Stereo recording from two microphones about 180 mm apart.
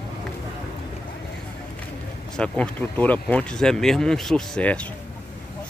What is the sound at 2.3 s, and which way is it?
Speech, 5° left (ahead or behind).